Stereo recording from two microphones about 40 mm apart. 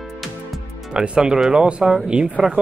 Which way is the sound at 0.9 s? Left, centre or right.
Right.